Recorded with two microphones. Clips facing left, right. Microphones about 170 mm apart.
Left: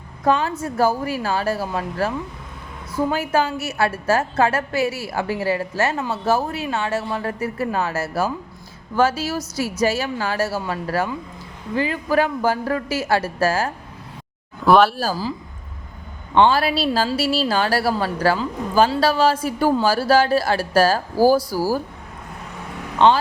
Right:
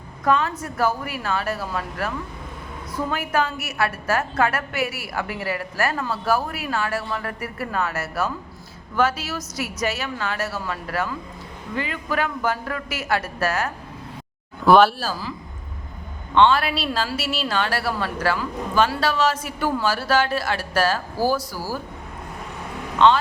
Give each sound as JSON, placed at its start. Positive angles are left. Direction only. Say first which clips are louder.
{"t": 0.3, "sound": "a woman's voice", "louder": "left 2 dB", "side_deg": 30}
{"t": 14.6, "sound": "speech", "louder": "even", "side_deg": 0}
{"t": 14.9, "sound": "a woman's voice", "louder": "left 5 dB", "side_deg": 40}
{"t": 16.3, "sound": "a woman's voice", "louder": "left 1 dB", "side_deg": 35}